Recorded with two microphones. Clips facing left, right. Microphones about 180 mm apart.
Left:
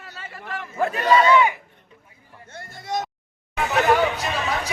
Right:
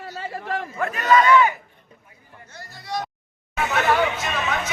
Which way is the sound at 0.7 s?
30° left (ahead or behind).